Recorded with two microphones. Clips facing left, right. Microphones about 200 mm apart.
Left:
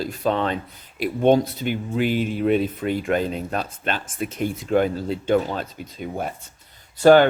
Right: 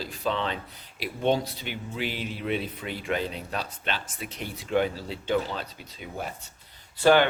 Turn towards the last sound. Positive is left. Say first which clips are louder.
# left 7 dB
turn(degrees=45)  # may be behind; listen again after turning